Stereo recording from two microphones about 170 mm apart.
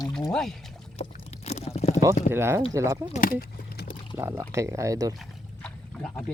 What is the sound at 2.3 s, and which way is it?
Speech, 15° right (ahead or behind).